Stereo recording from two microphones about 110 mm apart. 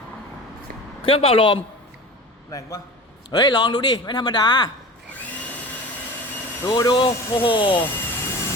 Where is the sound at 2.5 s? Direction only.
30° left (ahead or behind).